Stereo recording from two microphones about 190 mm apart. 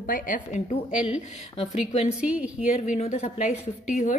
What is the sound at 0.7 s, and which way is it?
A woman's voice, 35° left (ahead or behind).